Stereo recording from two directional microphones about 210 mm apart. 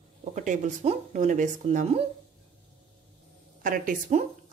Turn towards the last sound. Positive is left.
turn(degrees=-40)  # may be behind; listen again after turning